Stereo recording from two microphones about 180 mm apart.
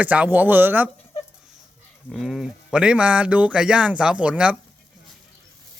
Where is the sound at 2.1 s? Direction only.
Centre (ahead or behind).